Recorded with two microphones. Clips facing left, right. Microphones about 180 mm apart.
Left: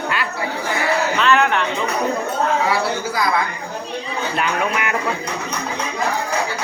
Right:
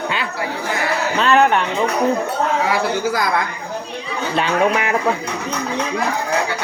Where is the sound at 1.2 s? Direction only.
35° right (ahead or behind).